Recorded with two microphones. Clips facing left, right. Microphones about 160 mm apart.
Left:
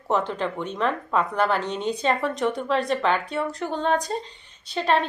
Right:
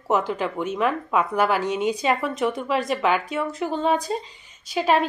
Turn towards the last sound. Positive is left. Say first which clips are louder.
# right 2 dB
turn(degrees=-5)  # may be behind; listen again after turning